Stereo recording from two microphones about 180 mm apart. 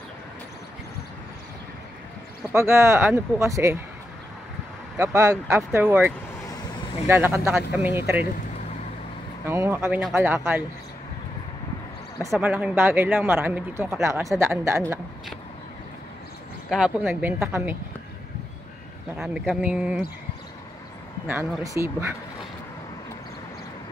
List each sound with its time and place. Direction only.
2.5 s speech: 15° right (ahead or behind)
4.9 s speech: 15° right (ahead or behind)
9.5 s speech: 15° right (ahead or behind)
12.3 s speech: 5° right (ahead or behind)
16.6 s speech: 5° right (ahead or behind)
19.1 s speech: 5° right (ahead or behind)
21.3 s speech: 15° right (ahead or behind)